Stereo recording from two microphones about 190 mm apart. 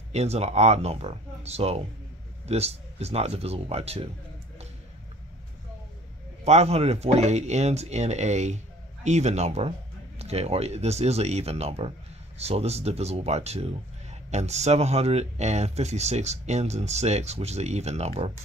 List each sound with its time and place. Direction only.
0.1 s speech: 35° right (ahead or behind)
6.4 s speech: 35° right (ahead or behind)